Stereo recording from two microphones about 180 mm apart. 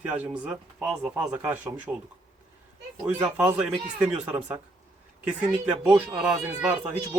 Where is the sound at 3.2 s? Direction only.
10° right (ahead or behind).